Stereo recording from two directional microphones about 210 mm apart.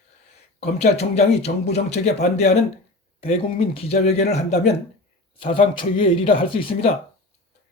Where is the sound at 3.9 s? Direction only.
30° left (ahead or behind).